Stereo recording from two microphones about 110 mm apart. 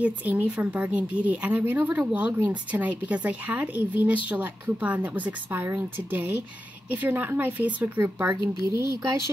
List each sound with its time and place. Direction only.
0.0 s a woman's voice: 15° right (ahead or behind)
8.7 s speech: 30° right (ahead or behind)